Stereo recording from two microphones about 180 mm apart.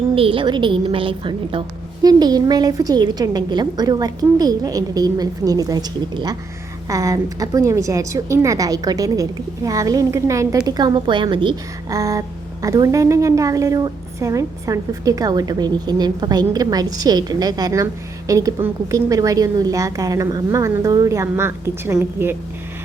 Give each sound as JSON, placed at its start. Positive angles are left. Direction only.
{"t": 0.2, "sound": "a woman's voice", "side_deg": -30}